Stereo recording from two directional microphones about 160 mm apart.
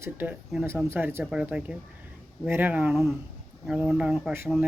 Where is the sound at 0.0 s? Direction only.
10° right (ahead or behind).